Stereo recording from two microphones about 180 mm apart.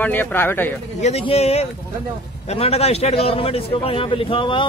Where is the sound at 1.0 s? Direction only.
35° left (ahead or behind).